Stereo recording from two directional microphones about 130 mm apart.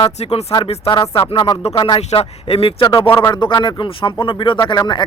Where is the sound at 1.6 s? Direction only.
55° left (ahead or behind).